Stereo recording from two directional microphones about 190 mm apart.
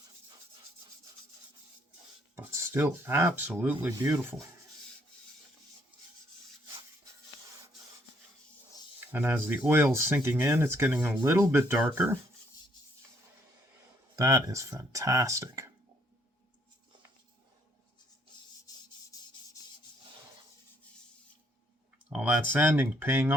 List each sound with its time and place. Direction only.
2.3 s speech: 15° right (ahead or behind)
9.1 s speech: 10° right (ahead or behind)
14.2 s speech: 20° right (ahead or behind)
19.1 s rub: 15° left (ahead or behind)
22.1 s speech: 5° right (ahead or behind)